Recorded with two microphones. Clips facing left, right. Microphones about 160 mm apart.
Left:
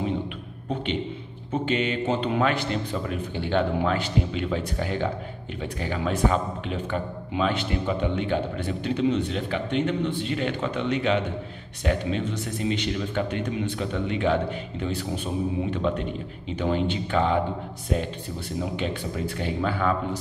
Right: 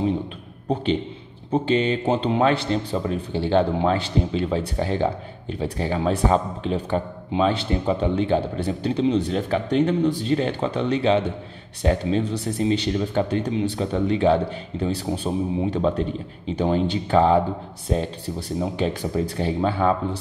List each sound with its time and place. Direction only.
0.7 s speech: 35° right (ahead or behind)